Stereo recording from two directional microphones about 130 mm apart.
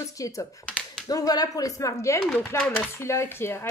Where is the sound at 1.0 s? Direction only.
30° left (ahead or behind).